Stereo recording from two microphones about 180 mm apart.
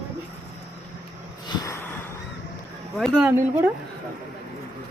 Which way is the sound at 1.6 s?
15° left (ahead or behind).